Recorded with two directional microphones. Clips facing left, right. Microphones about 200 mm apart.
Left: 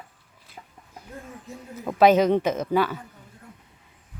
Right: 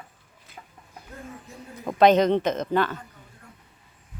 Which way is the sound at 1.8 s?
5° left (ahead or behind).